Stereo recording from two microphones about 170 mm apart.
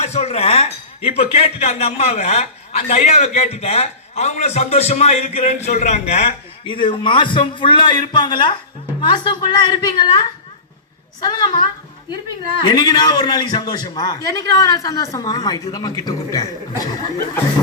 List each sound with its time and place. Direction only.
0.0 s a man's voice: 40° left (ahead or behind); by 11.6 s 25° left (ahead or behind)
12.6 s a man's voice: 25° left (ahead or behind)